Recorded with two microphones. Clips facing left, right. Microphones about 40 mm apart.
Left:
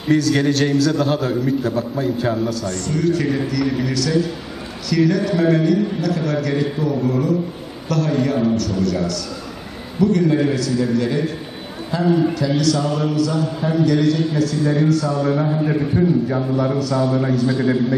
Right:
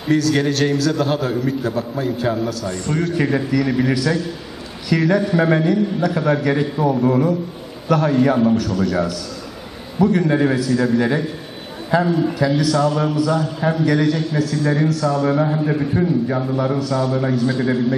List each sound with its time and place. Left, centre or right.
0.1 s a man's voice: centre
2.6 s a man's voice: centre
9.9 s a man's voice: centre
11.9 s a man's voice: centre
15.2 s a man's voice: centre